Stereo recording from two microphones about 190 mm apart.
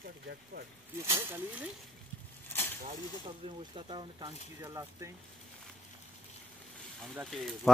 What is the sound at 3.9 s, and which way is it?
Speech, 25° right (ahead or behind).